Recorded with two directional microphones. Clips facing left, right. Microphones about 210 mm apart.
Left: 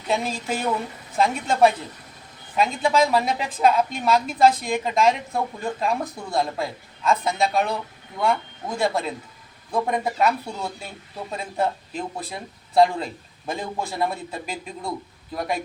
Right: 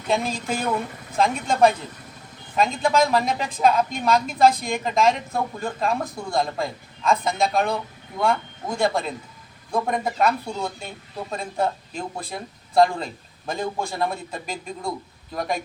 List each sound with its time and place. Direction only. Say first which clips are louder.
0.1 s speech: right 1 dB; 5° left (ahead or behind)
8.8 s speech: right 1 dB; 5° left (ahead or behind)